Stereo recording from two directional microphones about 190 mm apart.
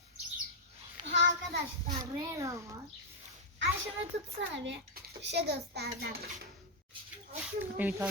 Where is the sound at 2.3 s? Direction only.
15° right (ahead or behind).